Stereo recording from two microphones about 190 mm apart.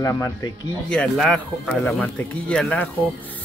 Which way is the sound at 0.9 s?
5° left (ahead or behind).